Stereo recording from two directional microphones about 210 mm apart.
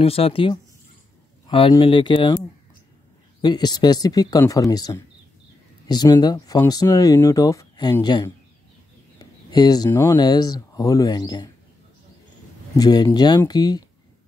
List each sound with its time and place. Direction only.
0.0 s speech: 25° left (ahead or behind)
3.3 s speech: 20° left (ahead or behind)
9.5 s speech: 20° left (ahead or behind)
12.7 s speech: 20° left (ahead or behind)